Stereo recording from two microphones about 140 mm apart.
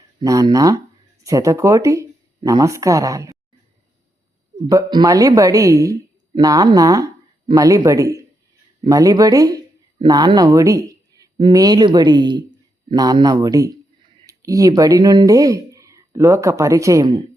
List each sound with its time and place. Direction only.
0.2 s speech: 25° right (ahead or behind)
4.6 s speech: 30° right (ahead or behind)